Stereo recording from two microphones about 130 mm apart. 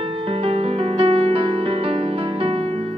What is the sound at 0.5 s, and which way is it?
Music, 45° right (ahead or behind).